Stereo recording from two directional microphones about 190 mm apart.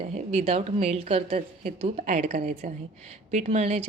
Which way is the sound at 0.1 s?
35° right (ahead or behind).